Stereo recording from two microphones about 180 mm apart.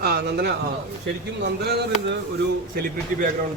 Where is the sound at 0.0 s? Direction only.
60° right (ahead or behind).